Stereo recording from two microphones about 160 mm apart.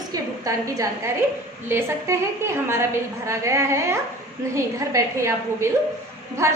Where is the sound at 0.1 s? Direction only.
20° right (ahead or behind).